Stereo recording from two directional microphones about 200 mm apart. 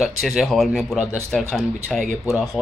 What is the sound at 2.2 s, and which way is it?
Speech, 15° right (ahead or behind).